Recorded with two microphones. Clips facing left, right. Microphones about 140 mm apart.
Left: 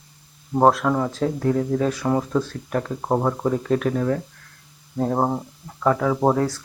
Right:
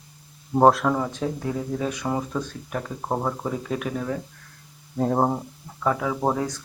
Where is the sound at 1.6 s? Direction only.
10° right (ahead or behind).